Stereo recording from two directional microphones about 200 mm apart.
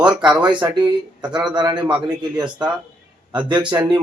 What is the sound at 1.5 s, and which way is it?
Speech, 20° right (ahead or behind).